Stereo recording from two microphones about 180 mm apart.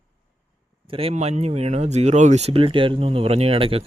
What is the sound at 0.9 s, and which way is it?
Speech, 30° right (ahead or behind).